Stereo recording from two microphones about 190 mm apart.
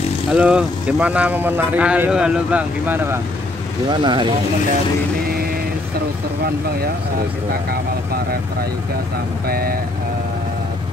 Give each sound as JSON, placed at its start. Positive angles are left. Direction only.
{"t": 0.3, "sound": "speech", "side_deg": -5}
{"t": 3.9, "sound": "speech", "side_deg": -25}
{"t": 7.7, "sound": "speech", "side_deg": -55}
{"t": 9.5, "sound": "speech", "side_deg": -50}